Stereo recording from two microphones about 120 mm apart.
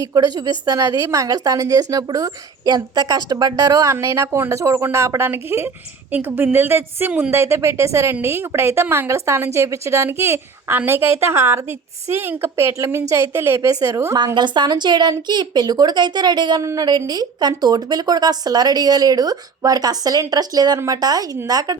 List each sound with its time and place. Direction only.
0.0 s speech: 35° right (ahead or behind)